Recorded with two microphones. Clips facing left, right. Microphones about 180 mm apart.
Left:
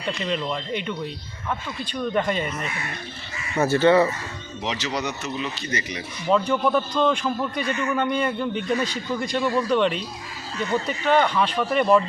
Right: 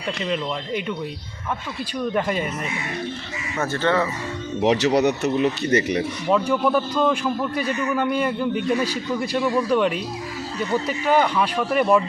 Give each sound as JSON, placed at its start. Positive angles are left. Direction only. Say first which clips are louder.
{"t": 0.2, "sound": "a man's voice", "louder": "right 1 dB", "side_deg": 0}
{"t": 3.6, "sound": "speech", "louder": "left 5 dB", "side_deg": 10}
{"t": 4.6, "sound": "speech", "louder": "right 10 dB", "side_deg": -65}
{"t": 6.2, "sound": "a man's voice", "louder": "even", "side_deg": -5}